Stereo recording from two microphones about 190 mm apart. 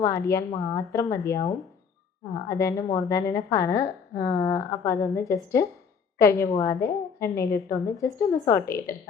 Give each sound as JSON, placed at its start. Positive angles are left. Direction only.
{"t": 0.0, "sound": "a woman's voice", "side_deg": 15}